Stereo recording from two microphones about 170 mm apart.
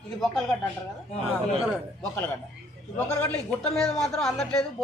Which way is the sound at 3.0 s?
10° left (ahead or behind).